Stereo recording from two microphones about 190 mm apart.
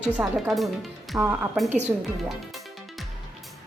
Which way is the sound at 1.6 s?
35° right (ahead or behind).